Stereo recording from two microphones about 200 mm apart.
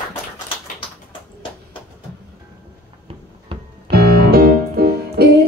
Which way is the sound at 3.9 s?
50° right (ahead or behind).